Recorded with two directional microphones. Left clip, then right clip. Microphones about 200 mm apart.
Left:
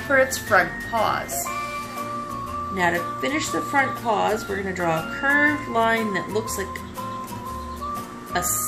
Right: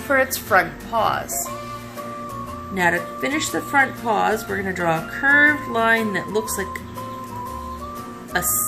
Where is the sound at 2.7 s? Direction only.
25° right (ahead or behind).